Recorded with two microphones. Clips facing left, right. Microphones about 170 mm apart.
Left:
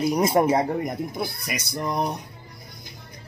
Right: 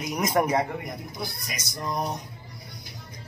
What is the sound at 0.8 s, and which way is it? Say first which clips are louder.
Speech: left 7 dB; 55° left (ahead or behind).